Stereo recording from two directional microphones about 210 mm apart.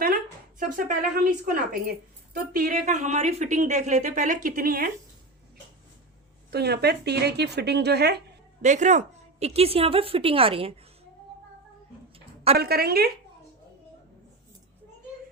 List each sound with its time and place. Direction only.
0.6 s a woman's voice: 40° right (ahead or behind)
6.5 s speech: 50° right (ahead or behind)
8.6 s a woman's voice: 35° right (ahead or behind)
12.5 s speech: 50° right (ahead or behind)